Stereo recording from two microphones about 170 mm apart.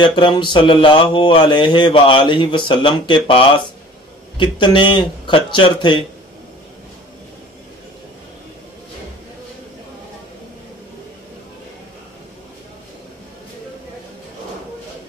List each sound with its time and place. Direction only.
0.0 s speech: 30° left (ahead or behind)